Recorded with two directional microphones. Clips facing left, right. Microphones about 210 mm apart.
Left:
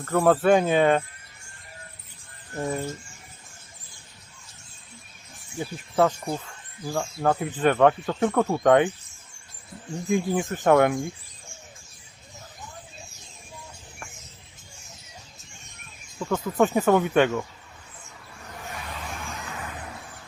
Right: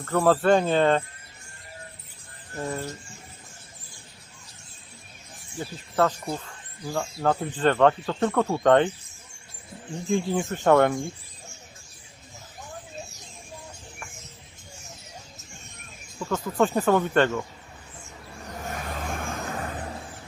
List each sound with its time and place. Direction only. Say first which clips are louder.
0.0 s speech: left 1 dB; 5° left (ahead or behind)
2.6 s speech: left 3 dB; 15° left (ahead or behind)
5.5 s speech: left 2 dB; 10° left (ahead or behind)
6.8 s speech: left 1 dB; centre (ahead or behind)
10.1 s speech: left 1 dB; 5° left (ahead or behind)
16.2 s speech: left 1 dB; 5° left (ahead or behind)
18.7 s vehicle: right 4 dB; 50° right (ahead or behind)